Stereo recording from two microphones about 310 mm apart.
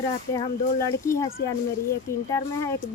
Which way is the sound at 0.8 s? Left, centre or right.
Centre.